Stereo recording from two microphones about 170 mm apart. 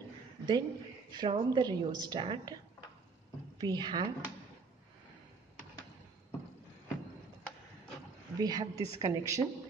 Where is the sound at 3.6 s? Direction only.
25° right (ahead or behind).